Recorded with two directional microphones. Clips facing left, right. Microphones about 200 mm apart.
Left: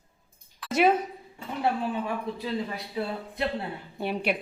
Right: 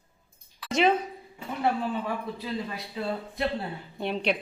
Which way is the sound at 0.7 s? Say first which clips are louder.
Left 1 dB; 5° left (ahead or behind).